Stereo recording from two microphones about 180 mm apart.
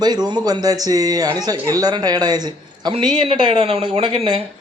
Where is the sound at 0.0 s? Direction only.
20° right (ahead or behind).